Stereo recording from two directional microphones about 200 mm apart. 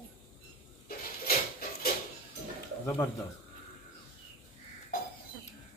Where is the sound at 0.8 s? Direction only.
45° left (ahead or behind).